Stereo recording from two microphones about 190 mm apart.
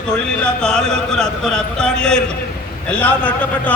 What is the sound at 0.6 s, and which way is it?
A man's voice, 5° left (ahead or behind).